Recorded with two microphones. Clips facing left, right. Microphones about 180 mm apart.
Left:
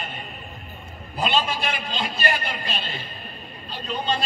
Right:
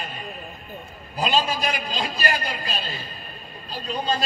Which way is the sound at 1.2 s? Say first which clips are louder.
Right 1 dB; 40° right (ahead or behind).